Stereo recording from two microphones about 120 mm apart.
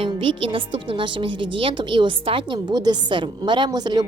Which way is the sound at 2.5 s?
35° right (ahead or behind).